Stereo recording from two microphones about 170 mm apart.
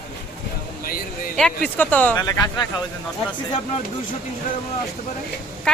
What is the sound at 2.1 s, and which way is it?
Speech, 20° left (ahead or behind).